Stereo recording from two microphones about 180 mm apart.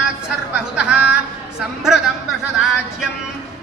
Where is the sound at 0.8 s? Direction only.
5° right (ahead or behind).